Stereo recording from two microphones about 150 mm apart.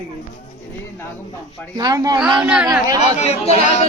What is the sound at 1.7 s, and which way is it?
Speech, 25° right (ahead or behind).